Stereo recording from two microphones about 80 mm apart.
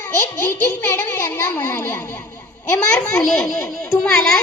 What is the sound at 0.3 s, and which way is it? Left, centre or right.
A child's voice, left.